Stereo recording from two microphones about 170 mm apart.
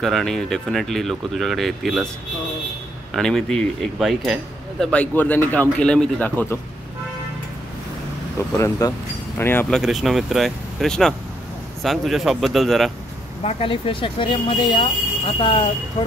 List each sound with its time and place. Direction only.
0.0 s speech: centre (ahead or behind)
3.1 s speech: 5° left (ahead or behind)
8.5 s speech: 20° left (ahead or behind)
9.8 s speech: centre (ahead or behind)
13.4 s speech: 35° left (ahead or behind)